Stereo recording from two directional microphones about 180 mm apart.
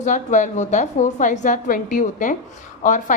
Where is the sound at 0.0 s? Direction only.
40° left (ahead or behind).